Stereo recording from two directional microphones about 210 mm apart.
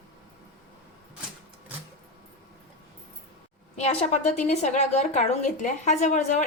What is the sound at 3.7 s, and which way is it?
A woman's voice, 30° left (ahead or behind).